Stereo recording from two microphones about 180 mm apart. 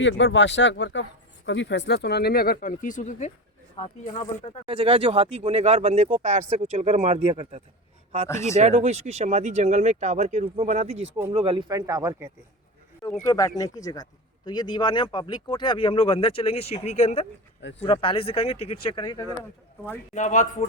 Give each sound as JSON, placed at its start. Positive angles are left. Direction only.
{"t": 0.0, "sound": "speech", "side_deg": 90}
{"t": 4.6, "sound": "speech", "side_deg": -30}
{"t": 8.3, "sound": "speech", "side_deg": 15}
{"t": 8.5, "sound": "speech", "side_deg": -35}
{"t": 13.2, "sound": "speech", "side_deg": 20}
{"t": 20.1, "sound": "speech", "side_deg": 40}